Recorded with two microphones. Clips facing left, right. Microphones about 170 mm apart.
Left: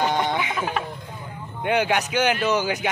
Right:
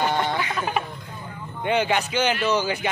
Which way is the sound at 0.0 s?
15° left (ahead or behind).